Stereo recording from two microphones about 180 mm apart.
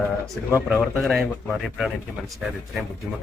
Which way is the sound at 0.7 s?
Centre (ahead or behind).